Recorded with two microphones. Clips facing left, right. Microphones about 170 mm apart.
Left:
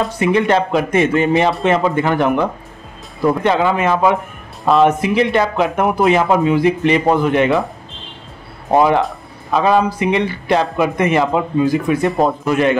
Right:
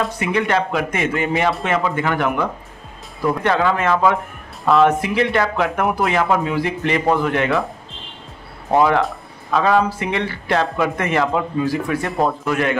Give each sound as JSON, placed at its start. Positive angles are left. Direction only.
{"t": 0.0, "sound": "speech", "side_deg": 25}
{"t": 3.3, "sound": "speech", "side_deg": 20}
{"t": 8.7, "sound": "speech", "side_deg": 20}